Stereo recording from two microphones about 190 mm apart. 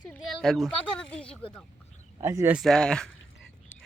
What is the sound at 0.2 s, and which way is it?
Speech, centre (ahead or behind).